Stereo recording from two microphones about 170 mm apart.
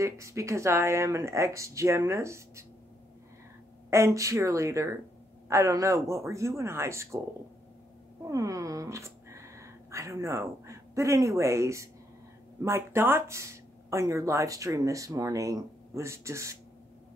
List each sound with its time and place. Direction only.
0.0 s speech: 15° right (ahead or behind)
3.9 s speech: 15° right (ahead or behind)
8.3 s speech: 20° right (ahead or behind)